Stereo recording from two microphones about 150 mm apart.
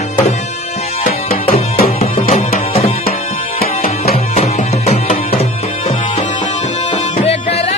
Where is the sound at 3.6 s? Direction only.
90° left.